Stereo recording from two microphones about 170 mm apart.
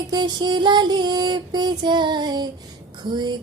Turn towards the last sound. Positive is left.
turn(degrees=-25)  # may be behind; listen again after turning